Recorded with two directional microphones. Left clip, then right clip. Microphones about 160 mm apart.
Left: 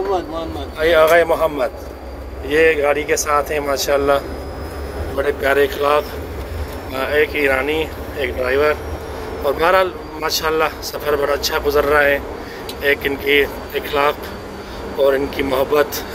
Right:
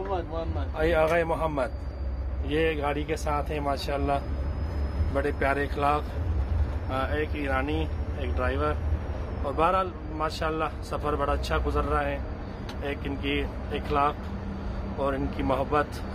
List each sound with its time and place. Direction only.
0.7 s speech: 20° right (ahead or behind)
5.2 s speech: 15° right (ahead or behind)
15.0 s speech: 10° right (ahead or behind)